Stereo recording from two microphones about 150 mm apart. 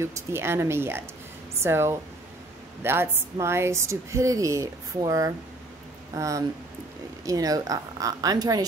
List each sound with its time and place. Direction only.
0.0 s a woman's voice: 15° right (ahead or behind)